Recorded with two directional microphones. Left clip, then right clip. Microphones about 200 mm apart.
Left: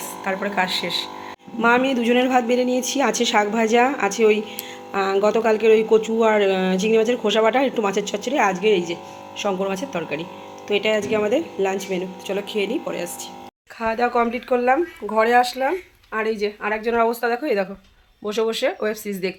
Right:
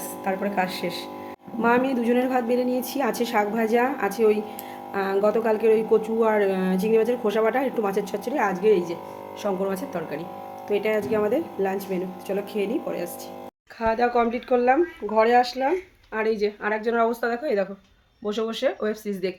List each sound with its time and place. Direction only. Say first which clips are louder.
0.3 s speech: left 3 dB; 5° right (ahead or behind)
1.6 s speech: left 4 dB; 5° left (ahead or behind)
16.8 s speech: left 4 dB; 20° left (ahead or behind)